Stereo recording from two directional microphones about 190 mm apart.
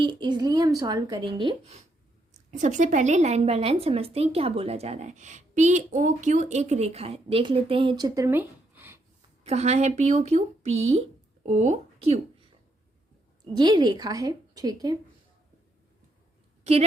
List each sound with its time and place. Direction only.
0.0 s speech: 25° right (ahead or behind)
2.5 s a woman's voice: 40° right (ahead or behind); by 9.0 s 10° right (ahead or behind)
9.4 s a woman's voice: 35° right (ahead or behind)
13.4 s speech: 20° right (ahead or behind)